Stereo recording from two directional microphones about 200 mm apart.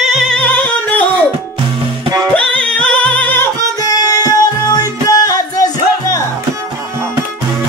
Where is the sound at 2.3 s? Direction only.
5° left (ahead or behind).